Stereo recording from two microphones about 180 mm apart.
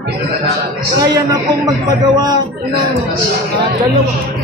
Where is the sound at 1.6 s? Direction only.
20° right (ahead or behind).